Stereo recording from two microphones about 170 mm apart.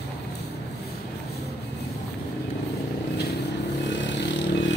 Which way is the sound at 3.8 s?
90° left.